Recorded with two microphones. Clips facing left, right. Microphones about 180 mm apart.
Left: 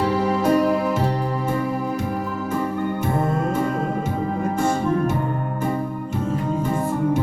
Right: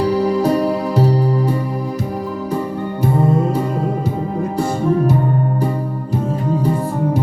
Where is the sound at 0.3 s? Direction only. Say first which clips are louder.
Right 2 dB; 35° right (ahead or behind).